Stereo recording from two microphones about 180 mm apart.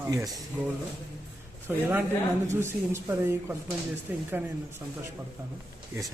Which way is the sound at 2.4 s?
15° right (ahead or behind).